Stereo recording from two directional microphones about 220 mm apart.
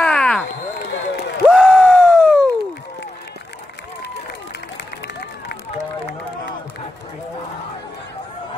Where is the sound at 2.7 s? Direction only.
50° left (ahead or behind).